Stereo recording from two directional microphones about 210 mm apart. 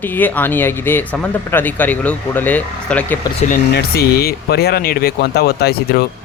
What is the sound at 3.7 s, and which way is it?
Speech, 50° left (ahead or behind).